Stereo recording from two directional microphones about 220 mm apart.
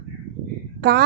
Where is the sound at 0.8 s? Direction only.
45° right (ahead or behind).